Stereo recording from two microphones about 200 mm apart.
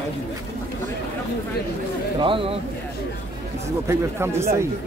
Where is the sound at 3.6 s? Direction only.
15° right (ahead or behind).